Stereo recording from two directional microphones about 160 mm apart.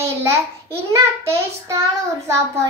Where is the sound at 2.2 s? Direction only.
15° right (ahead or behind).